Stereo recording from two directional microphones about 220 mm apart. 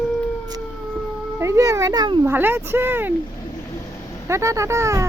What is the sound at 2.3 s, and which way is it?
Speech, 10° right (ahead or behind).